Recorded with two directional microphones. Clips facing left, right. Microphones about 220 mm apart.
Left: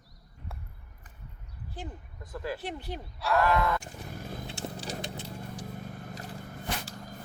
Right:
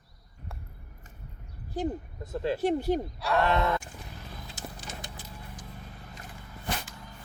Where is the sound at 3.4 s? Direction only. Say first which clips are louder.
Right 1 dB; 25° right (ahead or behind).